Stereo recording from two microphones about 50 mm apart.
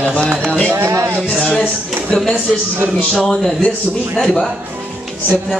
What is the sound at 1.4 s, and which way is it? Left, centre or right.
Speech, left.